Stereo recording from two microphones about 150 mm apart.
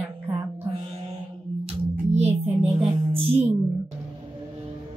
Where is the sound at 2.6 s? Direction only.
40° right (ahead or behind).